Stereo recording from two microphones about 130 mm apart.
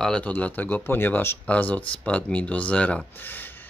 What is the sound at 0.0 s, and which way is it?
Speech, 10° left (ahead or behind).